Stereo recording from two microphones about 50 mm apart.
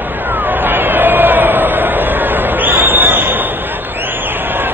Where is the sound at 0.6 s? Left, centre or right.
Right.